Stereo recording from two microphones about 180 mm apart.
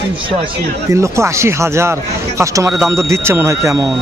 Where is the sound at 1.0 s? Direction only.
15° right (ahead or behind).